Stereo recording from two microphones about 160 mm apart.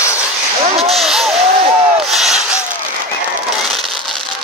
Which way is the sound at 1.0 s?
Centre (ahead or behind).